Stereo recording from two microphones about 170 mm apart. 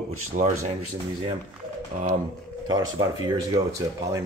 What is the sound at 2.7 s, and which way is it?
Speech, 25° right (ahead or behind).